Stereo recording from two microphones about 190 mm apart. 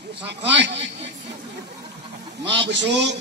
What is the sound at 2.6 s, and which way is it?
Speech, 70° right (ahead or behind).